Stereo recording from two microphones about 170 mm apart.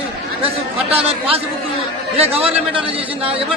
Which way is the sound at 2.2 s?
35° right (ahead or behind).